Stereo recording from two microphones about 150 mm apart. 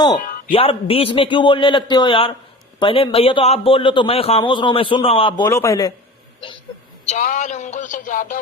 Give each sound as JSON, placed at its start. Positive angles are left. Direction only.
{"t": 0.2, "sound": "a sound", "side_deg": 70}
{"t": 0.5, "sound": "a man's voice", "side_deg": 40}
{"t": 5.5, "sound": "a man's voice", "side_deg": 20}
{"t": 7.0, "sound": "speech", "side_deg": 55}